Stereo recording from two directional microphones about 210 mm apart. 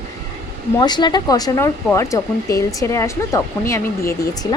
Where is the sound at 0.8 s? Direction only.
20° left (ahead or behind).